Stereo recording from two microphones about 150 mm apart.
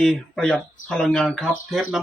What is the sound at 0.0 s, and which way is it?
Speech, 5° left (ahead or behind).